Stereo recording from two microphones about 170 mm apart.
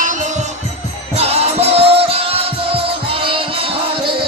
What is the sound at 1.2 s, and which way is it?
Music, 35° right (ahead or behind).